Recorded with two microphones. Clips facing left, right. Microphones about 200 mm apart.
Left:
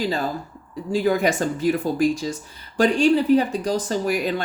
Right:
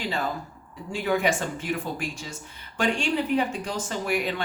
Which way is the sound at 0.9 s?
35° left (ahead or behind).